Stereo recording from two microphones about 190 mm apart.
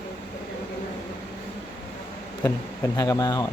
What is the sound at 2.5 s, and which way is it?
Speech, 15° left (ahead or behind).